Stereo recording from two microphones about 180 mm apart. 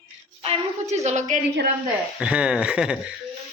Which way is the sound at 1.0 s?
40° right (ahead or behind).